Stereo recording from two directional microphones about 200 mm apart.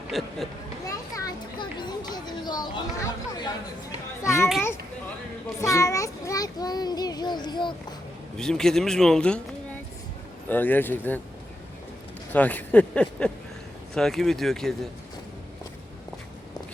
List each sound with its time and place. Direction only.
0.1 s speech: centre (ahead or behind)
0.9 s children playing: 15° left (ahead or behind)
4.2 s a child's voice: 15° left (ahead or behind)
5.7 s child singing: 15° left (ahead or behind)
8.4 s speech: 5° left (ahead or behind)
10.5 s speech: 10° left (ahead or behind)
12.3 s speech: 10° left (ahead or behind)